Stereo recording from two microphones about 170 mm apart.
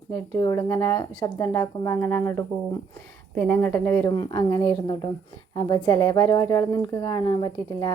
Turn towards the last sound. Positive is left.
turn(degrees=25)  # may be behind; listen again after turning